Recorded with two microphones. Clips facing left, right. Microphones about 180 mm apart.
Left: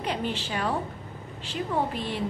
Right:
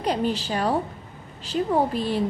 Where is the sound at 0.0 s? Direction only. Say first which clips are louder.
Right 6 dB; 40° right (ahead or behind).